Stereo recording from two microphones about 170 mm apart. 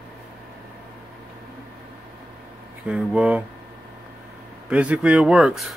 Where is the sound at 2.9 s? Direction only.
5° right (ahead or behind).